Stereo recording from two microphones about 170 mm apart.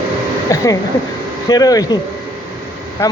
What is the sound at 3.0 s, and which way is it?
Speech, 20° left (ahead or behind).